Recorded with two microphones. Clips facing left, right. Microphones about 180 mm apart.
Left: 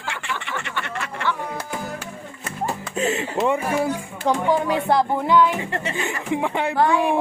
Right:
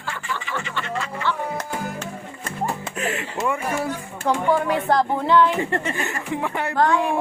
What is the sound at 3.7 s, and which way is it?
Speech, 15° left (ahead or behind).